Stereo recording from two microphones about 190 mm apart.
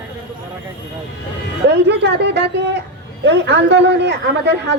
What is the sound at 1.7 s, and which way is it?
A woman's voice, 65° right (ahead or behind).